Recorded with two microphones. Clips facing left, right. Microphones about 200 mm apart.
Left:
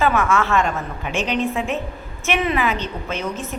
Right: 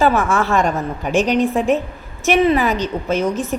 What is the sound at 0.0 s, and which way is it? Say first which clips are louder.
A woman's voice: right 3 dB; 35° right (ahead or behind).